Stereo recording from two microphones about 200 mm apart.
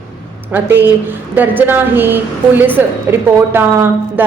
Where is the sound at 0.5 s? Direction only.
10° right (ahead or behind).